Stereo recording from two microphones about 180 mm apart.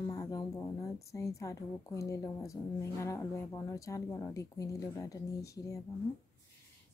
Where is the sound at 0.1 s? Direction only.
20° left (ahead or behind).